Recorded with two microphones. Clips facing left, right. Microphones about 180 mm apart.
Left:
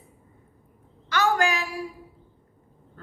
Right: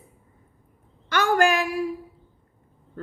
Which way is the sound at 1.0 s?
55° right (ahead or behind).